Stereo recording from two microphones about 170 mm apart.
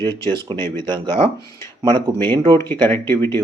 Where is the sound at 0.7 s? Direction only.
25° right (ahead or behind).